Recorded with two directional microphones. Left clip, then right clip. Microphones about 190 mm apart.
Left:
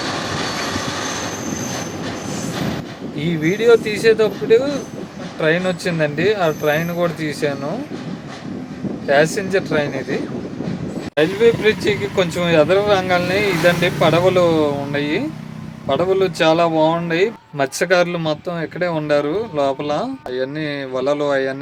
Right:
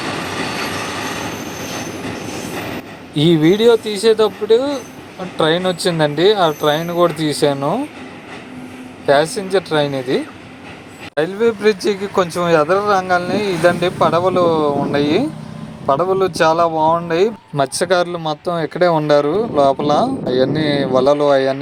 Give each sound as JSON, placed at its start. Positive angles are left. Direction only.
{"t": 3.2, "sound": "speech", "side_deg": -30}
{"t": 9.0, "sound": "speech", "side_deg": -30}
{"t": 11.1, "sound": "speech", "side_deg": -35}